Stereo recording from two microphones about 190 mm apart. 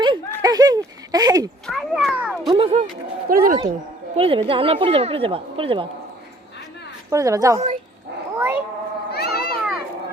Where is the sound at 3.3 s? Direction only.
50° right (ahead or behind).